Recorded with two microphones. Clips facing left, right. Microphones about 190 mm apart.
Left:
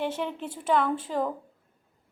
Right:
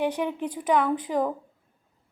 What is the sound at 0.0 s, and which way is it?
A woman's voice, 15° right (ahead or behind).